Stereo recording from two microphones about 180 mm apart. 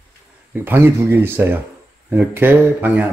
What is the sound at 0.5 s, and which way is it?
A man's voice, 10° right (ahead or behind).